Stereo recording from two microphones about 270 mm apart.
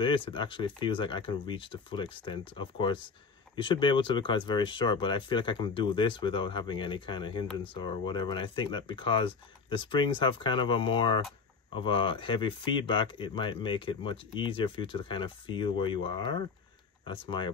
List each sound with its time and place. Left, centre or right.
0.0 s speech: centre